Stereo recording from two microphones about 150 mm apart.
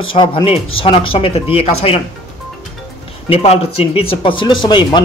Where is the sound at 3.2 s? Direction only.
40° left (ahead or behind).